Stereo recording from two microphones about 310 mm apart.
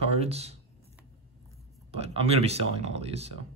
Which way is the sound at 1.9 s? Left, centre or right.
Centre.